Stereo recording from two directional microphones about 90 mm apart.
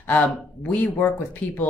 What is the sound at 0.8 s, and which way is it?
Speech, 20° left (ahead or behind).